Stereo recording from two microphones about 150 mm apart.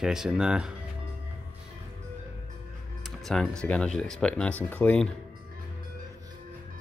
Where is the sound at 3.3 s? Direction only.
5° left (ahead or behind).